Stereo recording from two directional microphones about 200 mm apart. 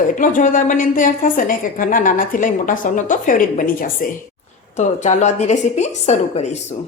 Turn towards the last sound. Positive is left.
turn(degrees=35)  # may be behind; listen again after turning